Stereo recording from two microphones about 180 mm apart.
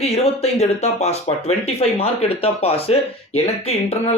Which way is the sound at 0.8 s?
35° left (ahead or behind).